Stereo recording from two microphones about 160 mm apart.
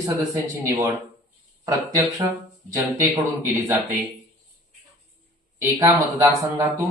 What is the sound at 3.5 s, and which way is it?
Speech, 15° right (ahead or behind).